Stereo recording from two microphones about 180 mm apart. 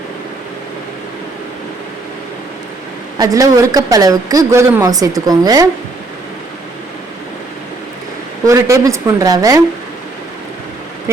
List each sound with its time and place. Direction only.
3.2 s a woman's voice: 20° right (ahead or behind)
8.4 s a woman's voice: 15° right (ahead or behind)